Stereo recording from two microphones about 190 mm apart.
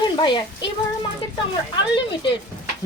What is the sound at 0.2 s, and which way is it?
Speech, 25° left (ahead or behind).